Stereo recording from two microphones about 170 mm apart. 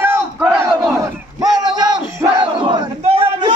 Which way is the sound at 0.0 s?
10° right (ahead or behind).